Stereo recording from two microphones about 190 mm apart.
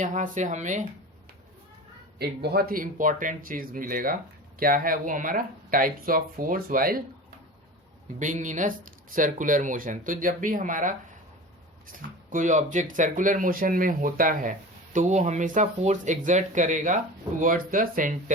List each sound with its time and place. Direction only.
0.0 s speech: 40° right (ahead or behind)
2.1 s speech: 60° right (ahead or behind)
8.2 s speech: 40° right (ahead or behind)